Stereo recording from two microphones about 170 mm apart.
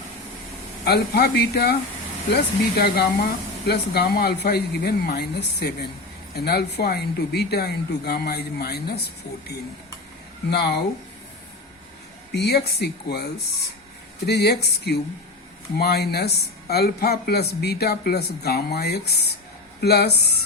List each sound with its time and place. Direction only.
0.9 s speech: 70° left (ahead or behind)
12.3 s speech: 75° left (ahead or behind)